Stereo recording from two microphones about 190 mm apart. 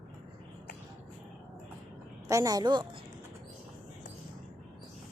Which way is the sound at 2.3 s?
15° right (ahead or behind).